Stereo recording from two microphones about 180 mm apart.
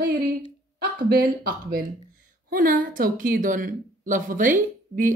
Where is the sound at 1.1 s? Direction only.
60° right (ahead or behind).